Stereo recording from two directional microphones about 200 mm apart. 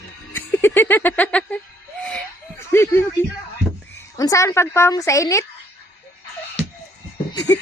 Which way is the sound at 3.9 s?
15° left (ahead or behind).